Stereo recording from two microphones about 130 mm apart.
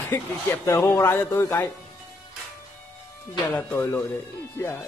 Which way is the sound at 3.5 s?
20° left (ahead or behind).